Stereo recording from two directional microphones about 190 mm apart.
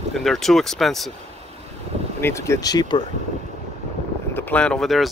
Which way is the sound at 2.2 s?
15° left (ahead or behind).